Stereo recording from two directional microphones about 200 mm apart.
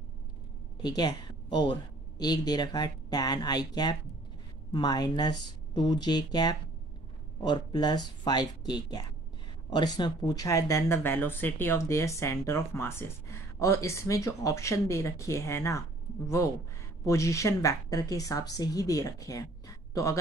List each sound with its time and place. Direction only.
0.8 s speech: 20° left (ahead or behind)